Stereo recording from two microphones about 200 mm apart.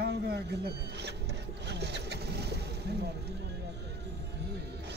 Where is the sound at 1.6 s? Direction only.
60° right (ahead or behind).